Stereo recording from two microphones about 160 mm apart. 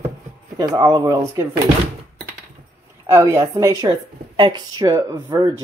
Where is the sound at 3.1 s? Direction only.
20° right (ahead or behind).